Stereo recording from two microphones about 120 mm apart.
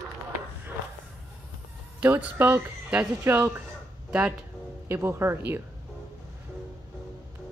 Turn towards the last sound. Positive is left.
turn(degrees=-20)  # may be behind; listen again after turning